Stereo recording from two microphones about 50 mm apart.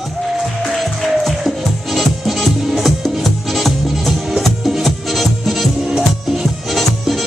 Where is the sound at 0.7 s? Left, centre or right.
Centre.